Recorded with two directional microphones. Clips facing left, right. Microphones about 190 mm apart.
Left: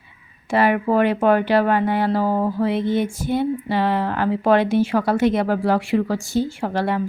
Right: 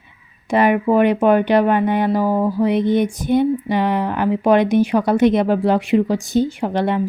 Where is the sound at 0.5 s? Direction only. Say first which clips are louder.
Right 3 dB; 20° right (ahead or behind).